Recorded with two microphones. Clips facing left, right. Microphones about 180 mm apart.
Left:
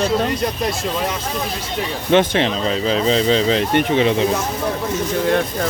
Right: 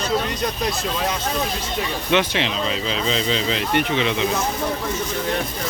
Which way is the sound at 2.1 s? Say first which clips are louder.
Left 6 dB; 50° left (ahead or behind).